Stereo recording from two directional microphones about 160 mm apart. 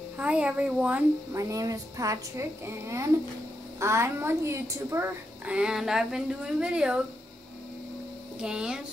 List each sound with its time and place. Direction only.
0.2 s speech: 10° right (ahead or behind)
1.4 s a woman's voice: 20° right (ahead or behind)
8.4 s speech: 5° right (ahead or behind)